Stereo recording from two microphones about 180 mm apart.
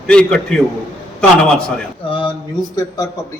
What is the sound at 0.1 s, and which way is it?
A man's voice, 5° left (ahead or behind).